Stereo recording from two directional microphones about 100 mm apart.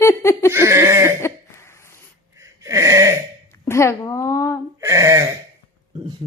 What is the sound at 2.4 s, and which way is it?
Gasp, 30° right (ahead or behind).